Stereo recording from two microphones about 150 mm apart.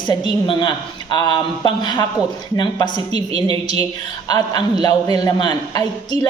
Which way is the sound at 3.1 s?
45° right (ahead or behind).